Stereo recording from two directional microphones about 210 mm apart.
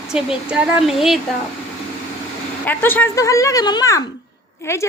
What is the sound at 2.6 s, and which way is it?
A child's voice, 10° left (ahead or behind).